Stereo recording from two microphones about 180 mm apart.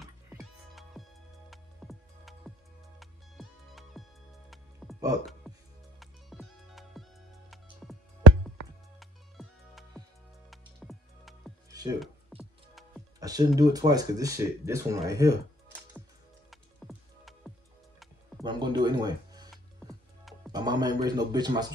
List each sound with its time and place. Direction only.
0.4 s music: centre (ahead or behind)
9.0 s music: centre (ahead or behind)
11.7 s music: 20° right (ahead or behind)
12.4 s music: centre (ahead or behind)
13.2 s speech: 20° right (ahead or behind)
16.4 s music: centre (ahead or behind)
18.4 s music: 25° right (ahead or behind)
19.5 s music: centre (ahead or behind)
20.5 s a sound: 20° right (ahead or behind)